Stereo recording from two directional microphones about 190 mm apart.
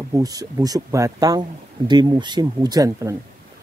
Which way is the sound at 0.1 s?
20° right (ahead or behind).